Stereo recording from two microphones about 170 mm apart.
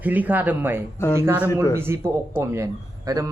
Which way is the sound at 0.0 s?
10° right (ahead or behind).